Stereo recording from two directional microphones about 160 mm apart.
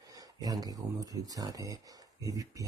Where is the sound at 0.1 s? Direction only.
25° right (ahead or behind).